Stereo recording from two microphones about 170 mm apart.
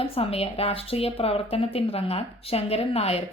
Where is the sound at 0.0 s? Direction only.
35° left (ahead or behind).